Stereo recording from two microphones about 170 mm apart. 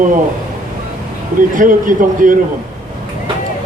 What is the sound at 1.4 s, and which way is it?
Speech, 50° right (ahead or behind).